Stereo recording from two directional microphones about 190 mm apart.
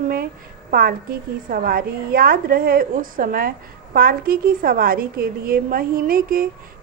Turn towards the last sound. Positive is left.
turn(degrees=-50)  # may be behind; listen again after turning